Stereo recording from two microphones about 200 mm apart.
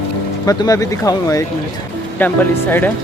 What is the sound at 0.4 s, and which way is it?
Speech, 15° left (ahead or behind).